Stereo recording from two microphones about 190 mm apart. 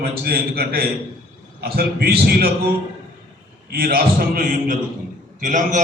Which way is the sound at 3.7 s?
50° right (ahead or behind).